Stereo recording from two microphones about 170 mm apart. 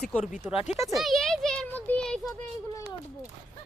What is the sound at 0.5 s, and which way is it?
Speech, 40° left (ahead or behind).